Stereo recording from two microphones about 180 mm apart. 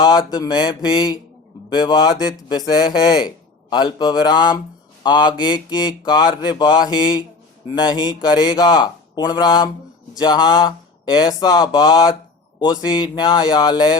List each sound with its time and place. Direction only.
0.0 s speech: 25° left (ahead or behind)